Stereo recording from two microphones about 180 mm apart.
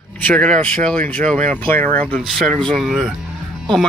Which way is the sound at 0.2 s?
5° left (ahead or behind).